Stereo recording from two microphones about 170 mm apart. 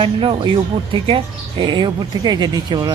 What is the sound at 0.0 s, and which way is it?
Speech, 30° right (ahead or behind).